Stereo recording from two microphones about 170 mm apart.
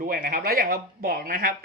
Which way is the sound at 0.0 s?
60° right (ahead or behind).